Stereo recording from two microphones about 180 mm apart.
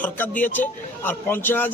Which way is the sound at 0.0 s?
10° left (ahead or behind).